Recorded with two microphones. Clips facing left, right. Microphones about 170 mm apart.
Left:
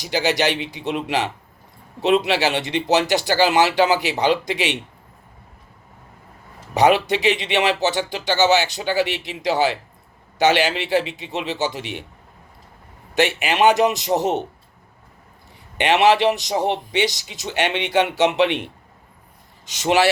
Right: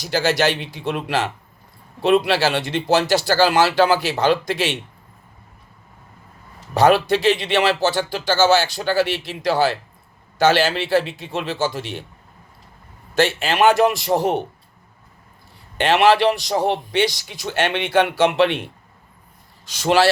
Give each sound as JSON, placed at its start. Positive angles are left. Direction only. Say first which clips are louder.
{"t": 0.0, "sound": "speech", "louder": "right 1 dB", "side_deg": 20}
{"t": 6.7, "sound": "speech", "louder": "right 1 dB", "side_deg": 20}
{"t": 13.1, "sound": "speech", "louder": "right 1 dB", "side_deg": 15}
{"t": 15.8, "sound": "speech", "louder": "right 1 dB", "side_deg": 20}